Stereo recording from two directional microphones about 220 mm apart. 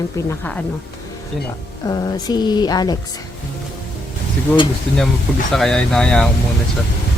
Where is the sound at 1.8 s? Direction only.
15° left (ahead or behind).